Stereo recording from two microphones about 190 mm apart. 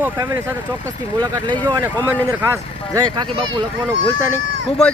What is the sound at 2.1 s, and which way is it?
Speech, 10° right (ahead or behind).